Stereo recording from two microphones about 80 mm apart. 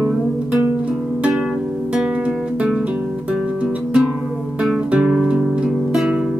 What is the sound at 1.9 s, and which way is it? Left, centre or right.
Music, centre.